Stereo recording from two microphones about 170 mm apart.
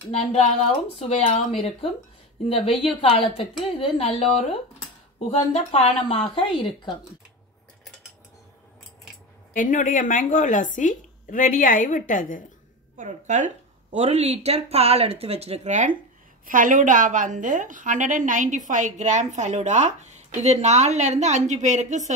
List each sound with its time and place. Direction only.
0.1 s speech: 40° left (ahead or behind)
9.5 s speech: 55° left (ahead or behind)
12.9 s a woman's voice: 45° right (ahead or behind)